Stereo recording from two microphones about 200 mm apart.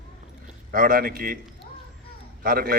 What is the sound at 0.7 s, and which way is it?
Speech, 45° right (ahead or behind).